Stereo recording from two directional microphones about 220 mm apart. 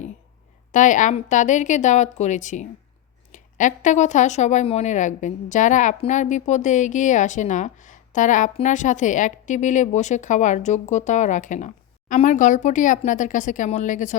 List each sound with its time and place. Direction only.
0.7 s a woman's voice: 35° left (ahead or behind)